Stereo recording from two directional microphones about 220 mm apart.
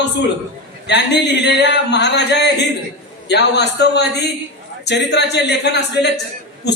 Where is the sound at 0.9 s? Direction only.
50° left (ahead or behind).